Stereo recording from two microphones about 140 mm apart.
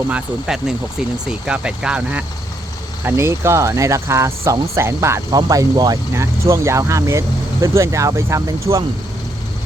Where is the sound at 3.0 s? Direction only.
20° right (ahead or behind).